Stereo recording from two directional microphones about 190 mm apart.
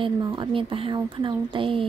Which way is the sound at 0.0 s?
25° right (ahead or behind).